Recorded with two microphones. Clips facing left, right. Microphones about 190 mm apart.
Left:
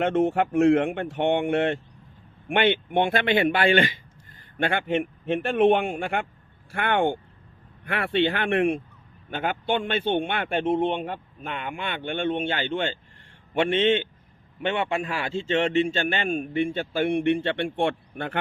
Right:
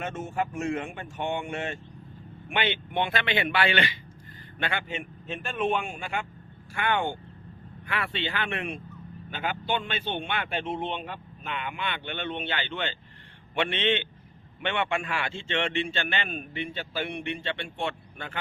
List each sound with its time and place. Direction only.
0.0 s a man's voice: 60° left (ahead or behind)